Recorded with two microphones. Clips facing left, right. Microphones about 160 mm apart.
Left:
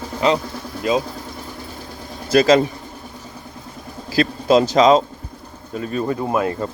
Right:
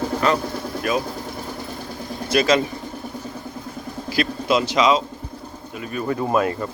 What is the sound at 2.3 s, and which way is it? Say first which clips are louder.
Speech: left 5 dB; 35° left (ahead or behind).